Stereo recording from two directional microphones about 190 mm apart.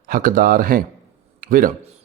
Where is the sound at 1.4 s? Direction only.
45° right (ahead or behind).